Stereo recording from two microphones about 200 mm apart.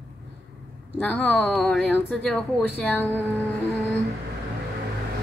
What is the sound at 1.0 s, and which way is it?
A woman's voice, 5° left (ahead or behind).